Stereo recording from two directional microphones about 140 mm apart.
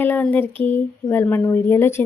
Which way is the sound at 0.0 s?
15° left (ahead or behind).